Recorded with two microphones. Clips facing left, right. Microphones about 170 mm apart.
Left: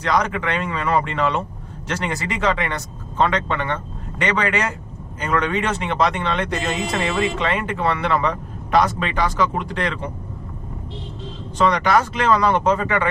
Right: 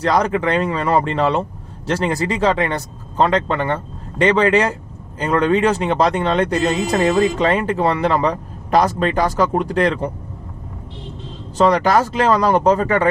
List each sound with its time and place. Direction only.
0.0 s speech: 35° right (ahead or behind)
11.5 s speech: 35° right (ahead or behind)